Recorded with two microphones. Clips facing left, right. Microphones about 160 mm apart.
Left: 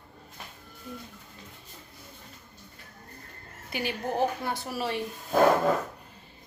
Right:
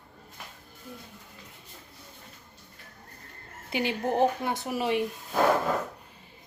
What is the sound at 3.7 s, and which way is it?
A woman's voice, 20° right (ahead or behind).